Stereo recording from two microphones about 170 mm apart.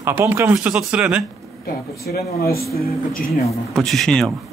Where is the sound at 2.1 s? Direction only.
60° left (ahead or behind).